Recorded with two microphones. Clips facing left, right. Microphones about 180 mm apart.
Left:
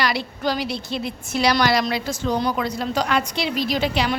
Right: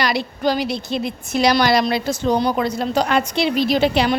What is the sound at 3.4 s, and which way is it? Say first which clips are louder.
Speech: right 6 dB; 60° right (ahead or behind).